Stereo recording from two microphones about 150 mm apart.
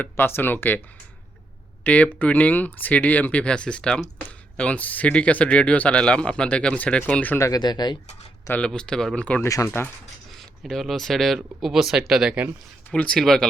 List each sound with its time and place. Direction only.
0.0 s speech: 15° left (ahead or behind)
1.8 s speech: 10° left (ahead or behind)
7.3 s speech: 25° left (ahead or behind)
8.4 s speech: 10° left (ahead or behind)
10.3 s speech: centre (ahead or behind)
12.9 s speech: 5° left (ahead or behind)